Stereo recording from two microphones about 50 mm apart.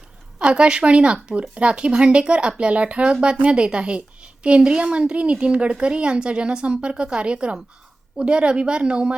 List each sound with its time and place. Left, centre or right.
0.3 s speech: right